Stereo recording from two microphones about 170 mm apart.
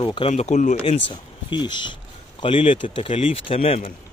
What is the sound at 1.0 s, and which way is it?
Speech, 25° left (ahead or behind).